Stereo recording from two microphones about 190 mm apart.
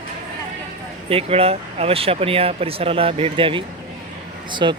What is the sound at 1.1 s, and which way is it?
Speech, 30° right (ahead or behind).